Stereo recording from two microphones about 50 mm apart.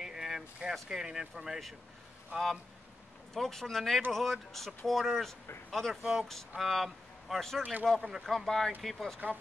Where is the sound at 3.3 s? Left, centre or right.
Centre.